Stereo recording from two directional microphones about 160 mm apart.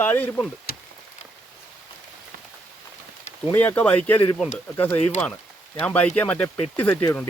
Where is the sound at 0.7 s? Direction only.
70° left (ahead or behind).